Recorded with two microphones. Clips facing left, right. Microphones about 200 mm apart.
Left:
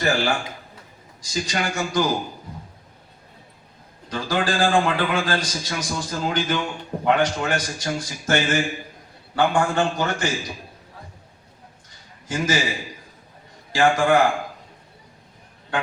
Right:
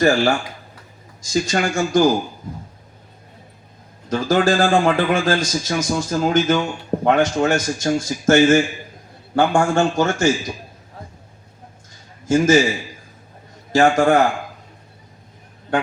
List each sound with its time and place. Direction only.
1.2 s a man's voice: 45° right (ahead or behind)
4.1 s a man's voice: 45° right (ahead or behind)
12.2 s a man's voice: 45° right (ahead or behind)
13.7 s a man's voice: 45° right (ahead or behind)